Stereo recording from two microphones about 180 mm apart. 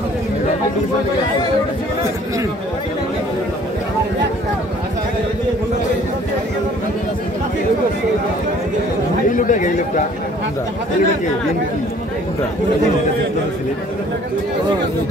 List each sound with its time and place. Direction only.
9.3 s speech: 45° left (ahead or behind)